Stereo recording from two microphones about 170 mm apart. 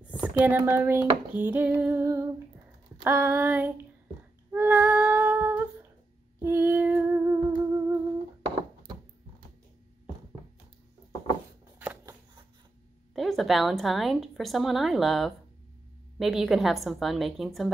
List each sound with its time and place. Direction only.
0.1 s speech: 10° right (ahead or behind)
1.3 s female singing: 10° right (ahead or behind)
4.5 s humming: 10° right (ahead or behind)
6.4 s female singing: 10° right (ahead or behind)
7.5 s humming: 20° right (ahead or behind)
11.8 s a sound: 10° right (ahead or behind)
13.1 s a woman's voice: centre (ahead or behind)